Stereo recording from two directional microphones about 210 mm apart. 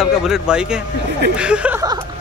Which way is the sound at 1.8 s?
15° right (ahead or behind).